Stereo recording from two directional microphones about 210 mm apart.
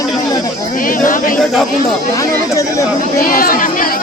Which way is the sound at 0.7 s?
40° left (ahead or behind).